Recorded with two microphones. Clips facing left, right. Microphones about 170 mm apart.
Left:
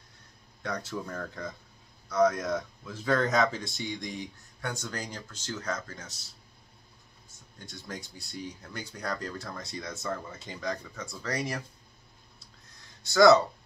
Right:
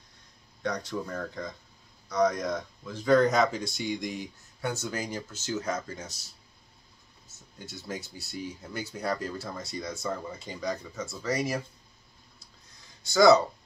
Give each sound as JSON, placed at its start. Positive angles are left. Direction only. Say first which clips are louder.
{"t": 0.6, "sound": "speech", "louder": "right 3 dB", "side_deg": 0}
{"t": 7.2, "sound": "speech", "louder": "right 4 dB", "side_deg": -5}
{"t": 13.0, "sound": "speech", "louder": "even", "side_deg": 0}